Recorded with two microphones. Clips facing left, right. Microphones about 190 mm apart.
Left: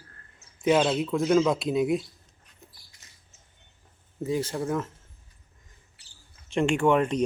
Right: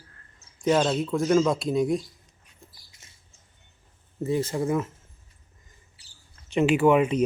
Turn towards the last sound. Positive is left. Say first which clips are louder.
# right 3 dB
turn(degrees=-5)  # may be behind; listen again after turning